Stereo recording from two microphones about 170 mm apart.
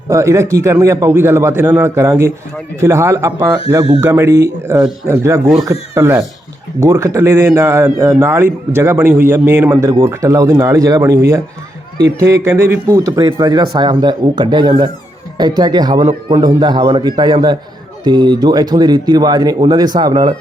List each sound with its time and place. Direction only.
0.1 s a man's voice: 15° right (ahead or behind)